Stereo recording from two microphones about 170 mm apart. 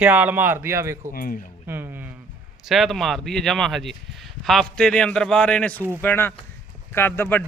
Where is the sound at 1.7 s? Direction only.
15° right (ahead or behind).